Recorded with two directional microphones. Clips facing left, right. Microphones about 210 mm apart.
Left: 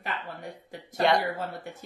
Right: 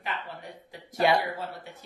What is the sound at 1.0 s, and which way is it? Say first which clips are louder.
Speech: even; 5° right (ahead or behind).